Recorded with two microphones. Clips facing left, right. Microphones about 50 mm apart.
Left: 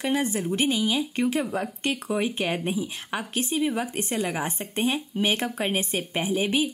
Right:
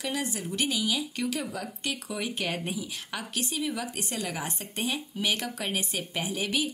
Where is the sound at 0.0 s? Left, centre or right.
Left.